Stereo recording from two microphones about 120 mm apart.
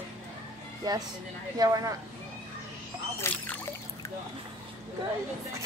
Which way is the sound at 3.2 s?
20° left (ahead or behind).